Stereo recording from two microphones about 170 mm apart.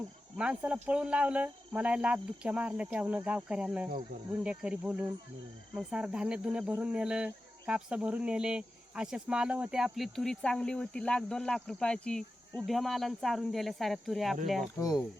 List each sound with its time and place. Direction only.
0.3 s speech: 5° right (ahead or behind)
14.8 s speech: 20° left (ahead or behind)